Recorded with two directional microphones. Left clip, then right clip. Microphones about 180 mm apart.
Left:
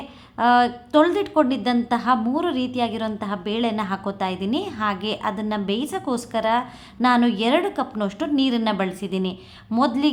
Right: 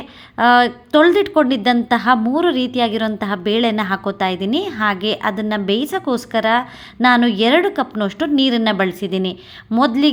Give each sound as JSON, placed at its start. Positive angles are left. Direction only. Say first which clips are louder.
{"t": 0.3, "sound": "a woman's voice", "louder": "right 5 dB", "side_deg": -25}